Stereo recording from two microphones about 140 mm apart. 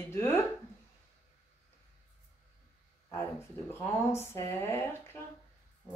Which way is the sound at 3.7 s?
15° left (ahead or behind).